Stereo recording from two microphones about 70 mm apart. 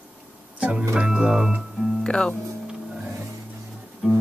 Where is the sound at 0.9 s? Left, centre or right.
Centre.